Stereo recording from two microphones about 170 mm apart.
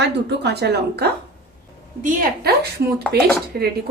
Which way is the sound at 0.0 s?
80° right.